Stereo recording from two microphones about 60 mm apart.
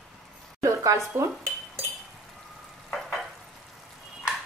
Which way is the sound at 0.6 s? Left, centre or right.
Right.